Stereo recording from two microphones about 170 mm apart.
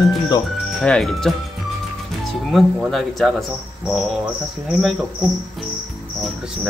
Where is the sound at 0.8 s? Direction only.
5° left (ahead or behind).